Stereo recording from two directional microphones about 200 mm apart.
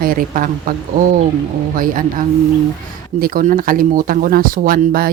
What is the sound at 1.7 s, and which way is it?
Speech, 40° right (ahead or behind).